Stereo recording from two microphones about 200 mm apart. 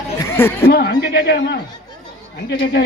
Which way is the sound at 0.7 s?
60° left (ahead or behind).